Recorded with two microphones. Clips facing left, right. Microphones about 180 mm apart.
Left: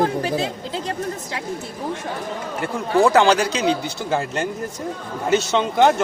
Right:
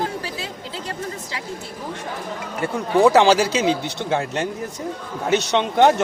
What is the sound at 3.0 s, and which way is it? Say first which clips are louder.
Speech: right 1 dB; centre (ahead or behind).